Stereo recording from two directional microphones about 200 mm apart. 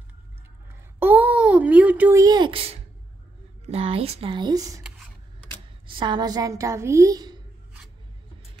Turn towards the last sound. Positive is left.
turn(degrees=-20)  # may be behind; listen again after turning